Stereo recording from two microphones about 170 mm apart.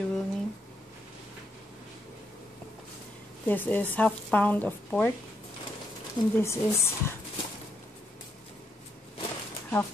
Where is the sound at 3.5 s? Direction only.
10° left (ahead or behind).